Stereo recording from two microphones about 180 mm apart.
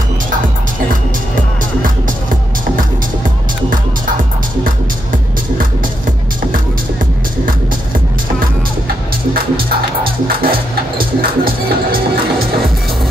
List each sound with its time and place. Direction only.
10.2 s music: 55° right (ahead or behind)